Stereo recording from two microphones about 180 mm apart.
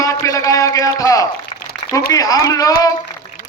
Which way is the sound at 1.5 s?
30° left (ahead or behind).